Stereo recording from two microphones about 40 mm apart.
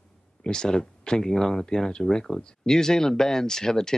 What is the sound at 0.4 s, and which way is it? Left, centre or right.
Speech, centre.